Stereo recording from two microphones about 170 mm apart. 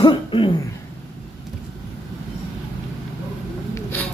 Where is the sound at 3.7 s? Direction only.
10° left (ahead or behind).